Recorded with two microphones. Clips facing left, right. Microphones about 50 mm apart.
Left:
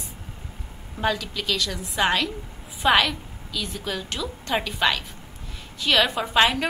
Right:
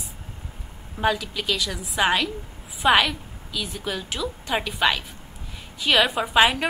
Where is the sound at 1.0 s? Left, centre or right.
Centre.